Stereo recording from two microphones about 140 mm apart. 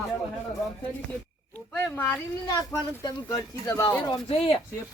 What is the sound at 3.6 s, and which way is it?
Speech, 20° left (ahead or behind).